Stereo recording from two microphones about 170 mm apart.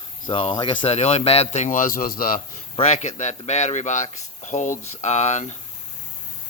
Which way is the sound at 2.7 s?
40° left (ahead or behind).